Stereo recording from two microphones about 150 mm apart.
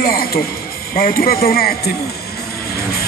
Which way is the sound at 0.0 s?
75° left (ahead or behind).